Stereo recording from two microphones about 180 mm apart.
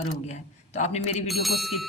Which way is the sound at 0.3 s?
40° left (ahead or behind).